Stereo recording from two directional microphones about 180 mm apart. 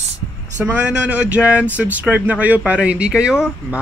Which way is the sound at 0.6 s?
5° right (ahead or behind).